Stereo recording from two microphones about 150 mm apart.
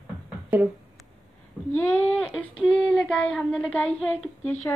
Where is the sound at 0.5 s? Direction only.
10° right (ahead or behind).